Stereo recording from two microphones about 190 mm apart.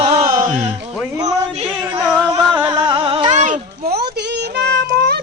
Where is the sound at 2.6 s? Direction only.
25° right (ahead or behind).